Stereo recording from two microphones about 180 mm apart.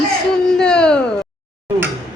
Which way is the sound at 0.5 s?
5° left (ahead or behind).